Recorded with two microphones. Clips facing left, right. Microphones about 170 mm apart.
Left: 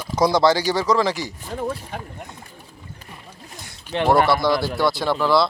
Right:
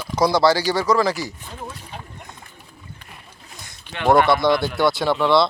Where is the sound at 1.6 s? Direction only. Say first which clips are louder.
Left 10 dB; 55° left (ahead or behind).